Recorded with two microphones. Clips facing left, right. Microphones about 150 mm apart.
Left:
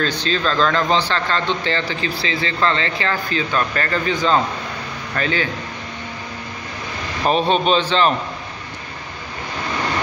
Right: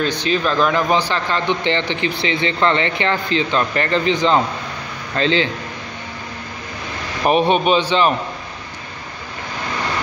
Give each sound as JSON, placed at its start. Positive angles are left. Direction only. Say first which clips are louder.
{"t": 0.0, "sound": "speech", "louder": "right 2 dB", "side_deg": -15}
{"t": 7.2, "sound": "a man's voice", "louder": "right 2 dB", "side_deg": -15}